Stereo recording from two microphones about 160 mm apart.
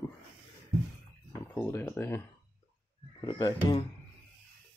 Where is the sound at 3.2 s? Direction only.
30° left (ahead or behind).